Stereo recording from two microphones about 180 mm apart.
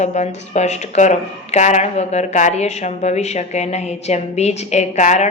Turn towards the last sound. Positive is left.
turn(degrees=40)  # may be behind; listen again after turning